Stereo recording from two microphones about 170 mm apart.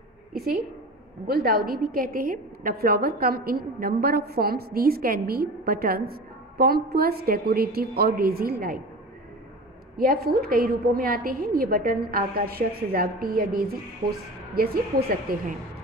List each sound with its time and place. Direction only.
0.3 s a woman's voice: 60° right (ahead or behind)
9.9 s a woman's voice: 65° right (ahead or behind)